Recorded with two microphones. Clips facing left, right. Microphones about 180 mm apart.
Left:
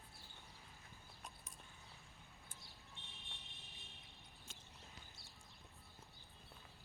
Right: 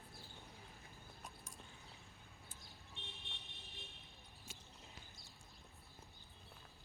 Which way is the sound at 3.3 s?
65° right (ahead or behind).